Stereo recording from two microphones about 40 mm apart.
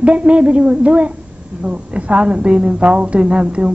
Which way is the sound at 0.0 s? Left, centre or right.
Right.